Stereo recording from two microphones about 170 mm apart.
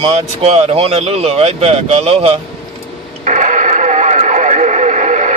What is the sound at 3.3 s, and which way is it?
Radio, 45° right (ahead or behind).